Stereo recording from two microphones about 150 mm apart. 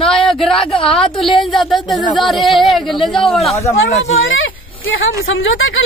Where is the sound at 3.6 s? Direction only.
45° left (ahead or behind).